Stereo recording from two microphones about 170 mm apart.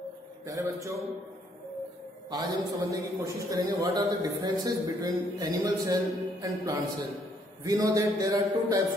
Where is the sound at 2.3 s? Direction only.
20° right (ahead or behind).